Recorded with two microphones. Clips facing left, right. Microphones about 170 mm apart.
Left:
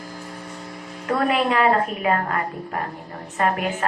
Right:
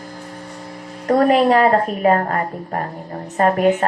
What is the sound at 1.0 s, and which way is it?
A woman's voice, 40° right (ahead or behind).